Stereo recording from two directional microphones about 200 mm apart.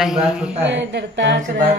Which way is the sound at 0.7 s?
65° right (ahead or behind).